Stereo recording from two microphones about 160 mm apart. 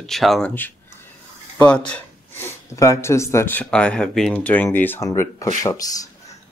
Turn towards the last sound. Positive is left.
turn(degrees=20)  # may be behind; listen again after turning